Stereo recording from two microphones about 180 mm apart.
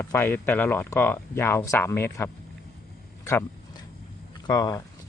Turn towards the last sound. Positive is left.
turn(degrees=20)  # may be behind; listen again after turning